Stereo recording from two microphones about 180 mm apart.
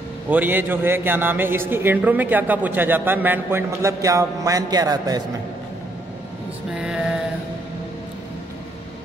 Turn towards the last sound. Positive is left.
turn(degrees=-5)  # may be behind; listen again after turning